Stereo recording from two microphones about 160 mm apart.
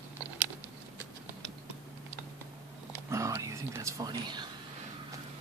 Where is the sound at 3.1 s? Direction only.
20° right (ahead or behind).